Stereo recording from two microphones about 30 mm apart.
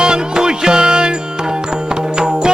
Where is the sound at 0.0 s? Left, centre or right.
Right.